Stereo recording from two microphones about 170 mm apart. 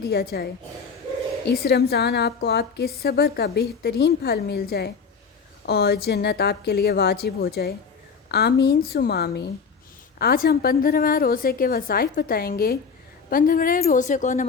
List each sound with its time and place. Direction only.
0.0 s a woman's voice: 70° left (ahead or behind)
1.5 s a woman's voice: 70° left (ahead or behind)
10.2 s a woman's voice: 60° left (ahead or behind)